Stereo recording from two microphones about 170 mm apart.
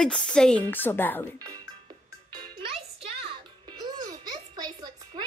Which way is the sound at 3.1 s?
30° right (ahead or behind).